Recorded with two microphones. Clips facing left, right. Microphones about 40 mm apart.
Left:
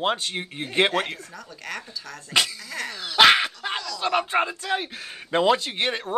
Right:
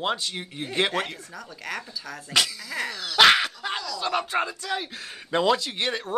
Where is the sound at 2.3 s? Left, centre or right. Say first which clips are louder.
Left 1 dB; centre.